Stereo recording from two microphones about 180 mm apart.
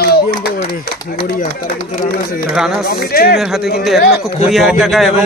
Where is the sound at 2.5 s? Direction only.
Centre (ahead or behind).